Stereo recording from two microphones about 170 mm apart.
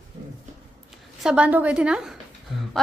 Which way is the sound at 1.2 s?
5° right (ahead or behind).